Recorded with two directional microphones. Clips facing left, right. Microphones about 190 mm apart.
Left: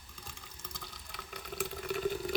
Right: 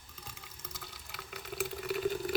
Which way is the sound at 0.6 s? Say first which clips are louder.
Even; 5° right (ahead or behind).